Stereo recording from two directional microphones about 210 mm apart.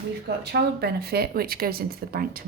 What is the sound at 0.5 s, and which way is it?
A woman's voice, 50° right (ahead or behind).